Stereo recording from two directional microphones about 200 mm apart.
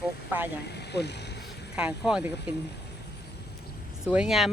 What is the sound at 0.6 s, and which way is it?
Speech, 55° left (ahead or behind).